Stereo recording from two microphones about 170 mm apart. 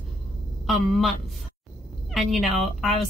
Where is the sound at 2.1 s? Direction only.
Centre (ahead or behind).